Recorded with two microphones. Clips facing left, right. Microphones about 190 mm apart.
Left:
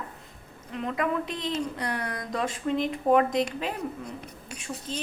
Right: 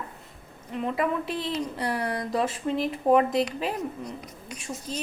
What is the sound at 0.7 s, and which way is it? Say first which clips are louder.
Speech: right 2 dB; 5° right (ahead or behind).